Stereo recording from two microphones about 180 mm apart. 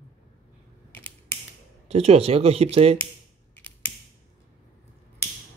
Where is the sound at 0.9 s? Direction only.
10° left (ahead or behind).